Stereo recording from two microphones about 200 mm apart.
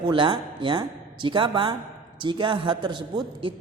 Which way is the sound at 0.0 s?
25° right (ahead or behind).